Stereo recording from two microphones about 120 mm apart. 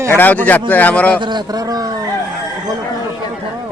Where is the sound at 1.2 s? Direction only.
40° right (ahead or behind).